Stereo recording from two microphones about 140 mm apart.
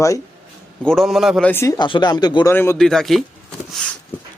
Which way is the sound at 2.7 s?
5° left (ahead or behind).